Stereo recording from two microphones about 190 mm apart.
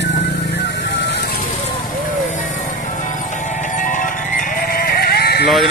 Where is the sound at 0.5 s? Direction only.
65° left (ahead or behind).